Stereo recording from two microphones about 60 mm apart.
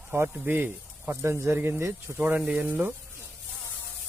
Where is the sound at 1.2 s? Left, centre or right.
Right.